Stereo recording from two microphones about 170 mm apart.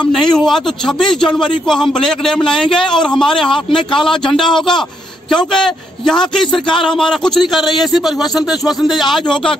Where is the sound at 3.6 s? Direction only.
30° left (ahead or behind).